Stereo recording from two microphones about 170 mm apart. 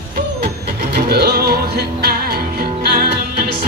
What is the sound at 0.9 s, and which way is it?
Music, 60° right (ahead or behind).